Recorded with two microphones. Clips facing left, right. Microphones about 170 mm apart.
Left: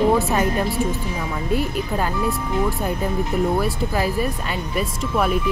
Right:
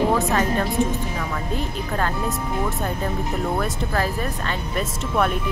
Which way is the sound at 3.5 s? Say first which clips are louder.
Left 2 dB; 10° left (ahead or behind).